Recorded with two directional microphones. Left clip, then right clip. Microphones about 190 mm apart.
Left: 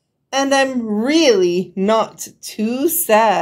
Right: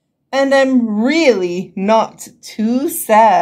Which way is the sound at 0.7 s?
45° left (ahead or behind).